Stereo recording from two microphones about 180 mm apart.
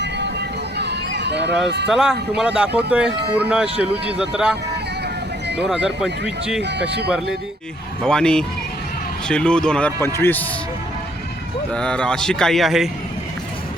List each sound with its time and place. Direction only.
0.0 s music: 70° right (ahead or behind)
1.9 s speech: 5° right (ahead or behind)
5.6 s speech: 5° right (ahead or behind)
6.6 s speech: 70° right (ahead or behind)
8.0 s speech: 5° left (ahead or behind)
11.7 s speech: 5° left (ahead or behind)